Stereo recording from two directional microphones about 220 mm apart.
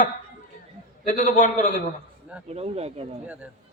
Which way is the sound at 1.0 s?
35° left (ahead or behind).